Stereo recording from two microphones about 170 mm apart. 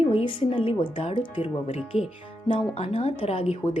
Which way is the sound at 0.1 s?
35° left (ahead or behind).